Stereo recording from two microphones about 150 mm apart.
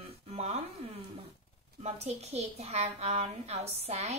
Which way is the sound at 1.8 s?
45° right (ahead or behind).